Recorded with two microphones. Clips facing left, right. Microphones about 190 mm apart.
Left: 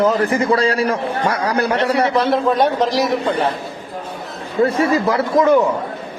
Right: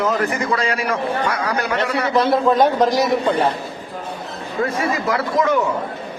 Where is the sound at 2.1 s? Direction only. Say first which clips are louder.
Even; centre (ahead or behind).